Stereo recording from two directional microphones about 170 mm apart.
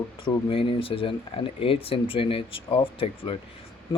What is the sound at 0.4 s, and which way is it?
Speech, 30° left (ahead or behind).